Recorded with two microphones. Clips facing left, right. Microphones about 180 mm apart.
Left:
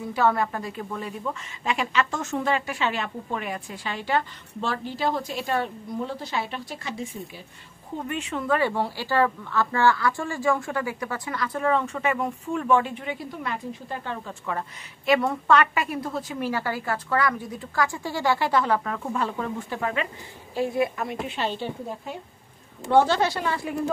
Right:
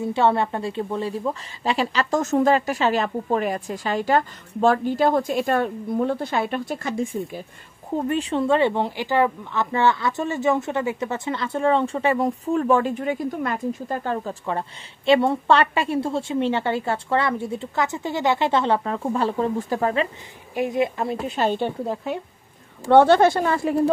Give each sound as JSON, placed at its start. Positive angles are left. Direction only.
{"t": 0.0, "sound": "a woman's voice", "side_deg": -25}
{"t": 8.1, "sound": "speech", "side_deg": -35}
{"t": 14.4, "sound": "speech", "side_deg": -30}
{"t": 20.5, "sound": "speech", "side_deg": -20}
{"t": 21.4, "sound": "a woman's voice", "side_deg": -50}
{"t": 21.8, "sound": "speech", "side_deg": -75}
{"t": 22.8, "sound": "a woman's voice", "side_deg": -60}